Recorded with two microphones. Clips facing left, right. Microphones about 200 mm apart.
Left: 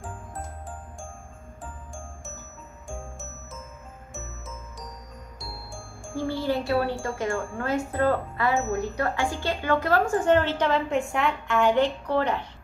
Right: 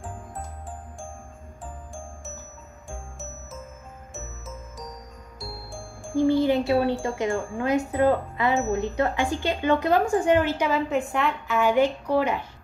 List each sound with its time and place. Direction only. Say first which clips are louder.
6.0 s speech: right 7 dB; 15° right (ahead or behind)